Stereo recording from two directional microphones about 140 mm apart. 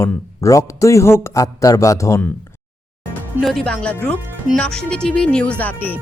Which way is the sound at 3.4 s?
Centre (ahead or behind).